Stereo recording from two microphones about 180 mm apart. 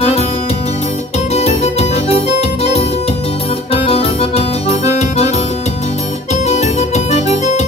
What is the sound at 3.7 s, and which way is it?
Accordion, 30° left (ahead or behind).